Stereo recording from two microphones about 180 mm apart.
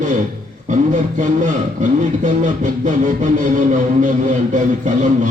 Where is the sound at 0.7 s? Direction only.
45° right (ahead or behind).